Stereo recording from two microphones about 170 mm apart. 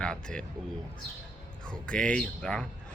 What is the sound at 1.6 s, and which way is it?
Speech, 5° left (ahead or behind).